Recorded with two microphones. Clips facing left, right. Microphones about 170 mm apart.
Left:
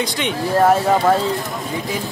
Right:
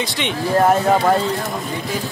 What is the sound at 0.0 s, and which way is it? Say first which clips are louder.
Speech: left 1 dB; centre (ahead or behind).